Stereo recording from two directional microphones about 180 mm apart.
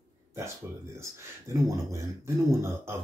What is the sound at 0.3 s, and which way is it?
Speech, 15° right (ahead or behind).